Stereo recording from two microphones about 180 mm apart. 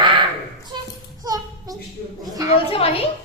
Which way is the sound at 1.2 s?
20° right (ahead or behind).